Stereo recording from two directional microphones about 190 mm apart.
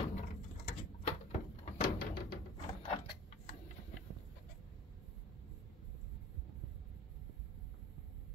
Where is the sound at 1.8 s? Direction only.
50° left (ahead or behind).